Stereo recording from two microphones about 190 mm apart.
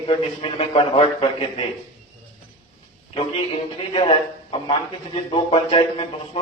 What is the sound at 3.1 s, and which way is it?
A man's voice, 30° left (ahead or behind).